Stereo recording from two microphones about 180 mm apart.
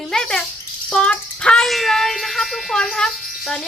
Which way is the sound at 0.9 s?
5° left (ahead or behind).